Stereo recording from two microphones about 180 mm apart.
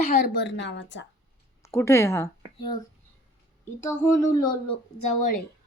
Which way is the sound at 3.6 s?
15° left (ahead or behind).